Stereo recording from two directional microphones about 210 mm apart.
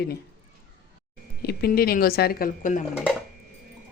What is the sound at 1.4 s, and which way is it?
Speech, 50° left (ahead or behind).